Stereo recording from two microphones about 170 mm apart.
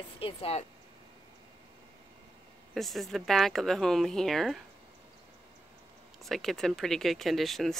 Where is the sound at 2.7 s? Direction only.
Centre (ahead or behind).